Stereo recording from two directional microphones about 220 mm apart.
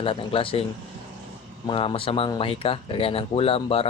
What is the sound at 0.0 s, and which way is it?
Speech, 25° left (ahead or behind).